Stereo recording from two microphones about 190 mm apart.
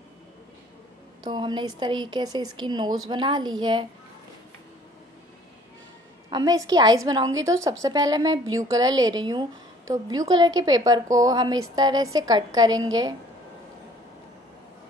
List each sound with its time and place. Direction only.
1.2 s a woman's voice: 25° right (ahead or behind)
6.3 s a woman's voice: 20° right (ahead or behind)